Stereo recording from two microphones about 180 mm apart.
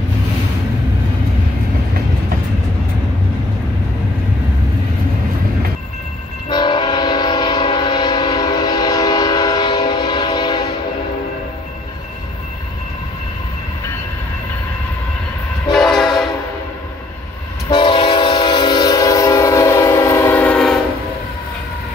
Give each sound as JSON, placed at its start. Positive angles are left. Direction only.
{"t": 6.5, "sound": "train", "side_deg": 25}
{"t": 15.7, "sound": "train", "side_deg": 0}
{"t": 17.6, "sound": "train", "side_deg": 25}